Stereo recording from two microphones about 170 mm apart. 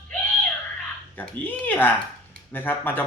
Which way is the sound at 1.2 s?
10° left (ahead or behind).